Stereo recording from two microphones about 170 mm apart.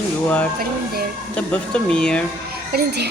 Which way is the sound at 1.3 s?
5° left (ahead or behind).